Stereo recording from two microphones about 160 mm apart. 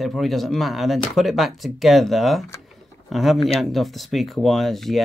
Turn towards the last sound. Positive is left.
turn(degrees=0)  # may be behind; listen again after turning